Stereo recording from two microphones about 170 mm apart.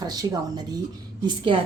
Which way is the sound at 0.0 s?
25° right (ahead or behind).